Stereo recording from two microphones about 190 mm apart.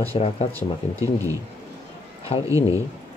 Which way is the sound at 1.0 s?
15° right (ahead or behind).